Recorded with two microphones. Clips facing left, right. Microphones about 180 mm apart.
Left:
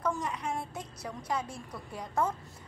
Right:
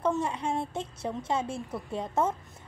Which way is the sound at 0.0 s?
30° right (ahead or behind).